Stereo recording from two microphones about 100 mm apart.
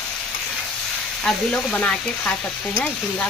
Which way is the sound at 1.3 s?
5° left (ahead or behind).